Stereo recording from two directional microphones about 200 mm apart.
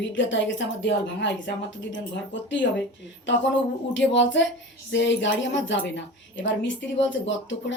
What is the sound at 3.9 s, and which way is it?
A woman's voice, 65° left (ahead or behind).